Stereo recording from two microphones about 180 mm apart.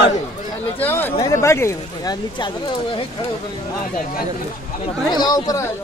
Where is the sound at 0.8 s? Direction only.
15° left (ahead or behind).